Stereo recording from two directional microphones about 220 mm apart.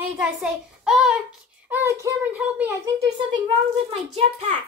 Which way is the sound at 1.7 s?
10° right (ahead or behind).